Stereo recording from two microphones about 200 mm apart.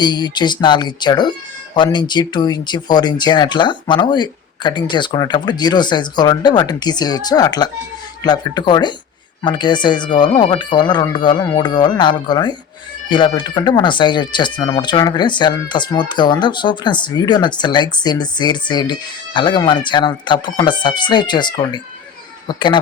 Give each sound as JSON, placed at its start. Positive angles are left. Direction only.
{"t": 0.0, "sound": "speech", "side_deg": 20}